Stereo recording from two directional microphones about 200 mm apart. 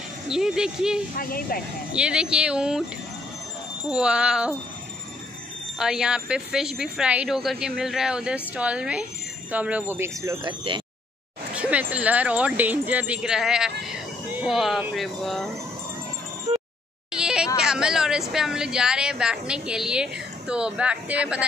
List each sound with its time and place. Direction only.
0.3 s a woman's voice: 5° right (ahead or behind)
1.1 s speech: 45° left (ahead or behind)
2.0 s a woman's voice: 5° right (ahead or behind)
3.9 s a woman's voice: 5° right (ahead or behind)
5.8 s a woman's voice: 5° right (ahead or behind)
11.5 s a woman's voice: 5° right (ahead or behind)
17.1 s a sound: 5° right (ahead or behind)
17.6 s a woman's voice: 5° right (ahead or behind)